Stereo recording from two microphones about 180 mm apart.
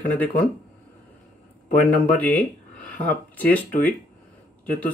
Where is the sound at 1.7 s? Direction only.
50° left (ahead or behind).